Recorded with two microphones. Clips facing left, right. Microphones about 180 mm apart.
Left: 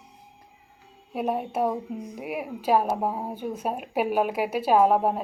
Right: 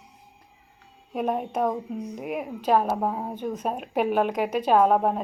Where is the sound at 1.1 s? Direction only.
5° left (ahead or behind).